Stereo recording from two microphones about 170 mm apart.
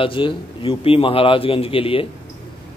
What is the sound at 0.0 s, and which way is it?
A man's voice, 30° left (ahead or behind).